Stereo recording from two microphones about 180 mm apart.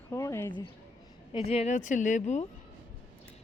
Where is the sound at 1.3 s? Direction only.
35° left (ahead or behind).